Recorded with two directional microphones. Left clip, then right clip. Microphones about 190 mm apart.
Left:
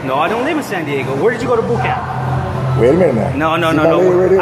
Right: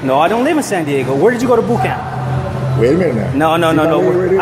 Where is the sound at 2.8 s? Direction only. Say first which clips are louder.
Left 2 dB; 25° right (ahead or behind).